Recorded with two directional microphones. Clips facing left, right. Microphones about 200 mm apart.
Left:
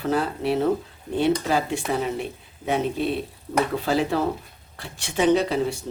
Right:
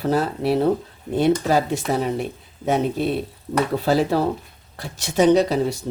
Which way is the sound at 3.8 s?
35° right (ahead or behind).